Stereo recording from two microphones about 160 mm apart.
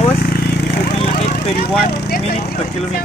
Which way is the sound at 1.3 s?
80° left.